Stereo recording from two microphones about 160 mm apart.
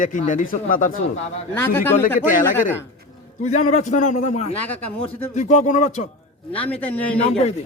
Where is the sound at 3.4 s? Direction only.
50° left (ahead or behind).